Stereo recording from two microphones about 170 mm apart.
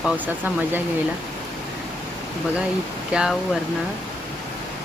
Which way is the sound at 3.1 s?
5° right (ahead or behind).